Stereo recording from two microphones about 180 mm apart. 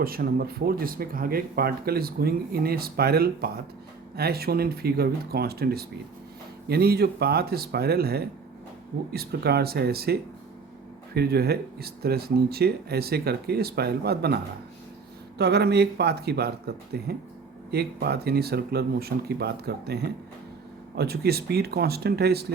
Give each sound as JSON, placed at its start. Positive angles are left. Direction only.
{"t": 0.0, "sound": "speech", "side_deg": -55}